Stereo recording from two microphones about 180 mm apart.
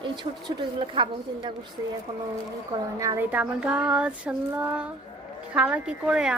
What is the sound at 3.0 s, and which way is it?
Child singing, 15° right (ahead or behind).